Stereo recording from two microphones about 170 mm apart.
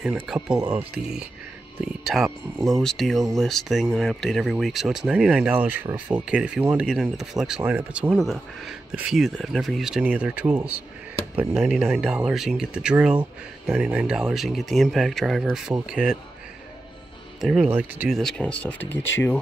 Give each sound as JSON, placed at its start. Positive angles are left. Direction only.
{"t": 0.0, "sound": "speech", "side_deg": -5}
{"t": 17.4, "sound": "speech", "side_deg": 0}